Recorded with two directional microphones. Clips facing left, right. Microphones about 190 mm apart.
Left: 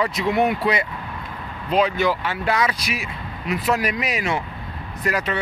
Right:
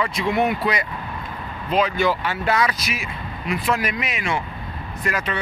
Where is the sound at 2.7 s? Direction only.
35° left (ahead or behind).